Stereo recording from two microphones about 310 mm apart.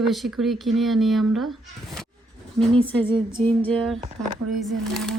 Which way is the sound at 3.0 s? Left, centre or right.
Centre.